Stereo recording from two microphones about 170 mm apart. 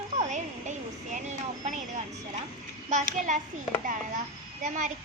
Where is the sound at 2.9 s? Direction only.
50° right (ahead or behind).